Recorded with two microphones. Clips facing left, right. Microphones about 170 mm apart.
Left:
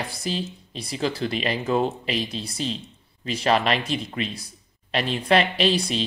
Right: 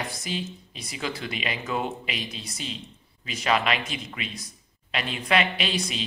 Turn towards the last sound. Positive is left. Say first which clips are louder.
# left 7 dB
turn(degrees=35)  # may be behind; listen again after turning